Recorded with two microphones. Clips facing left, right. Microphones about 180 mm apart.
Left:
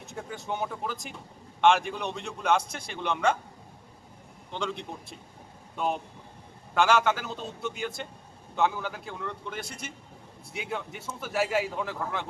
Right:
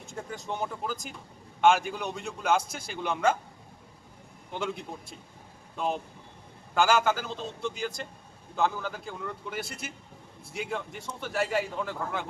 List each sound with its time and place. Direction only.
0.1 s a man's voice: centre (ahead or behind)
4.5 s a man's voice: 5° right (ahead or behind)